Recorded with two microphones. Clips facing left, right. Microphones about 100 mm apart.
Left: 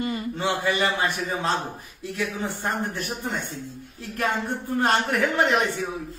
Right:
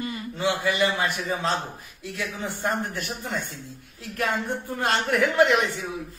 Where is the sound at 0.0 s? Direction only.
30° left (ahead or behind).